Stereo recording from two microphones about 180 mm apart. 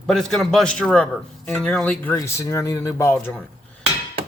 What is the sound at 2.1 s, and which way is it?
Speech, 15° left (ahead or behind).